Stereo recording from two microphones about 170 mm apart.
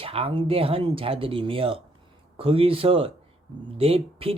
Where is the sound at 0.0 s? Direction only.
35° right (ahead or behind).